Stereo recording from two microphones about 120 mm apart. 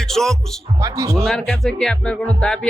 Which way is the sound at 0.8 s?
25° right (ahead or behind).